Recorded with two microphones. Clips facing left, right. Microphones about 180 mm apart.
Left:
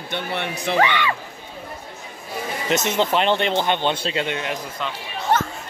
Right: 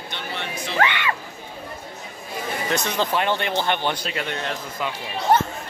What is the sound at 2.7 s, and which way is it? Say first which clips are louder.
Speech: left 4 dB; 20° left (ahead or behind).